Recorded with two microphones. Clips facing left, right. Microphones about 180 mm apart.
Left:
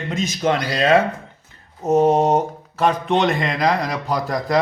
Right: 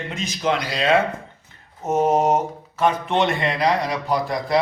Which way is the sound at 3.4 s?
40° left (ahead or behind).